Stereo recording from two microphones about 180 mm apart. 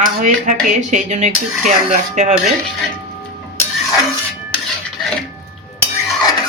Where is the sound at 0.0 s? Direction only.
45° right (ahead or behind).